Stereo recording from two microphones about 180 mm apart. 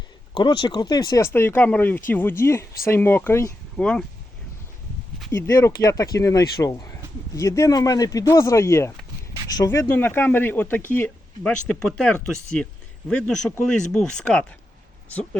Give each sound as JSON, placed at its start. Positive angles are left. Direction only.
{"t": 0.3, "sound": "speech", "side_deg": 25}
{"t": 5.3, "sound": "speech", "side_deg": 15}